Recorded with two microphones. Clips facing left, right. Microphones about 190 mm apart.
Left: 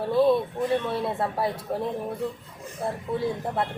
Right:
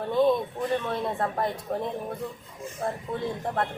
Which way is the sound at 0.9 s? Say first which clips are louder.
Left 1 dB; 5° left (ahead or behind).